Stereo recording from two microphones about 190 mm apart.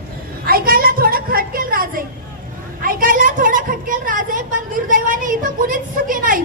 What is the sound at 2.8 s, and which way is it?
A woman's voice, 45° right (ahead or behind).